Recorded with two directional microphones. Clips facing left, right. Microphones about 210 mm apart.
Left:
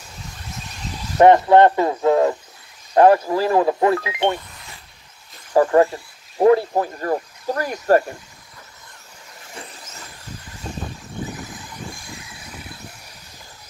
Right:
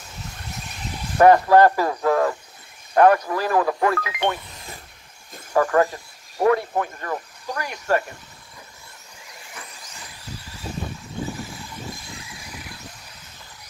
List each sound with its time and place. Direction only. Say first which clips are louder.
1.1 s speech: left 2 dB; 25° left (ahead or behind)
5.5 s speech: left 4 dB; 30° left (ahead or behind)